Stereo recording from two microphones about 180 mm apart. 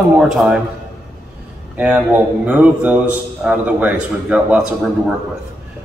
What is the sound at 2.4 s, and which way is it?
A man's voice, 5° right (ahead or behind).